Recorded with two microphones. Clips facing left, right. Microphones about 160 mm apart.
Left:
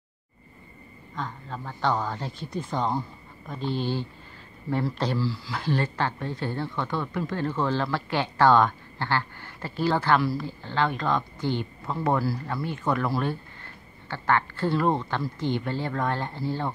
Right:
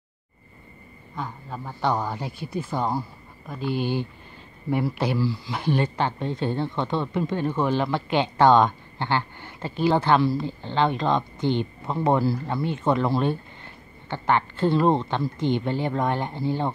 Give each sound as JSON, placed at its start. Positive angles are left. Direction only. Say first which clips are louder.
{"t": 1.1, "sound": "speech", "louder": "right 1 dB", "side_deg": -10}